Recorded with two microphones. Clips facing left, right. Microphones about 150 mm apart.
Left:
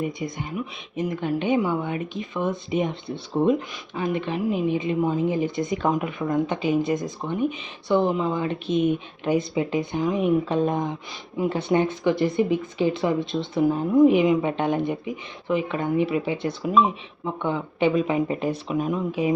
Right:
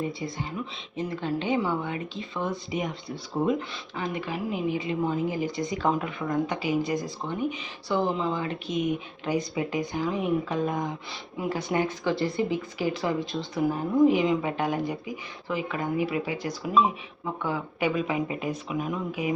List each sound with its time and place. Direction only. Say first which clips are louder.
0.0 s speech: left 3 dB; 20° left (ahead or behind)
3.9 s speech: left 6 dB; 20° left (ahead or behind)